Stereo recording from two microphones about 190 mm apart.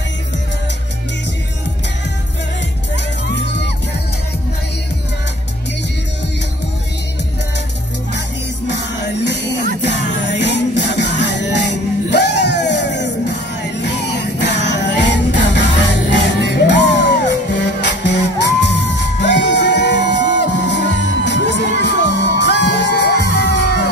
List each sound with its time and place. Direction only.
8.6 s music: 65° left (ahead or behind)